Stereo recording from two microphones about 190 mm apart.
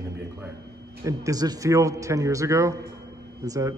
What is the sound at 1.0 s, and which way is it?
A man's voice, 15° right (ahead or behind).